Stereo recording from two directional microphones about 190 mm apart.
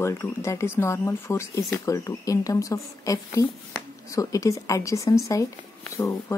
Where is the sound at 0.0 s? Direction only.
15° left (ahead or behind).